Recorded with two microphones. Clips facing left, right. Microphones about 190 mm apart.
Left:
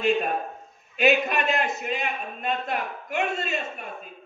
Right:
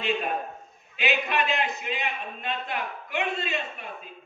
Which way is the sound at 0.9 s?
45° left (ahead or behind).